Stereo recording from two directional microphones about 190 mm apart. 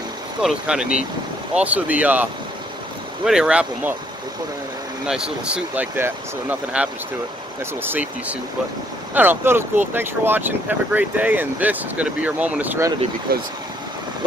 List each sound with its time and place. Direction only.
0.4 s speech: 5° right (ahead or behind)
3.3 s speech: 5° right (ahead or behind)
5.0 s speech: 5° right (ahead or behind)
13.3 s speech: 50° right (ahead or behind)